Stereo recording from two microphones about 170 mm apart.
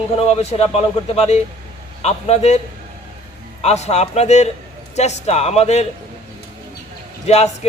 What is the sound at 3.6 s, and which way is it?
Speech, 40° left (ahead or behind).